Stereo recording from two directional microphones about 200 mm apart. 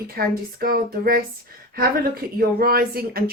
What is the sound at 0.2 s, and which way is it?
Speech, 50° right (ahead or behind).